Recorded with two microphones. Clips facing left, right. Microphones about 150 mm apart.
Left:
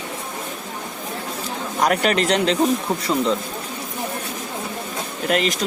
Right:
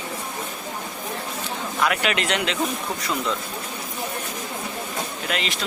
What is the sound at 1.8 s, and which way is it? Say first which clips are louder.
Speech: left 5 dB; 40° left (ahead or behind).